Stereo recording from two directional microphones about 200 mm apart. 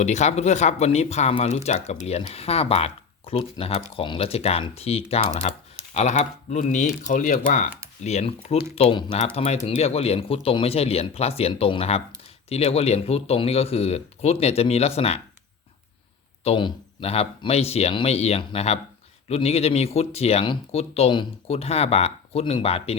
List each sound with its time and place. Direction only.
0.0 s speech: 35° left (ahead or behind)
16.4 s speech: 25° left (ahead or behind)